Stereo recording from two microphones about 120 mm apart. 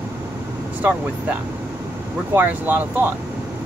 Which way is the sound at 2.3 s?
15° right (ahead or behind).